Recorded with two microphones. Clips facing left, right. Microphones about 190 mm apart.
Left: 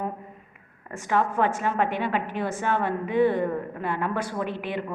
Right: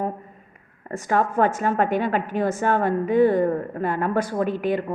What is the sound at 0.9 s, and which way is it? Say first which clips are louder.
A woman's voice: right 3 dB; 40° right (ahead or behind).